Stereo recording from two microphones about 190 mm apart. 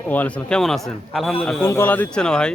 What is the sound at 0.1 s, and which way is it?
Speech, 5° left (ahead or behind).